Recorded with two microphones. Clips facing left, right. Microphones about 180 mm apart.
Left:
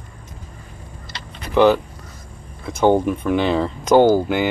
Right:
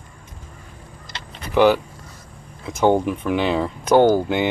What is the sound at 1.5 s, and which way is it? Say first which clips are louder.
Speech: left 1 dB; 10° right (ahead or behind).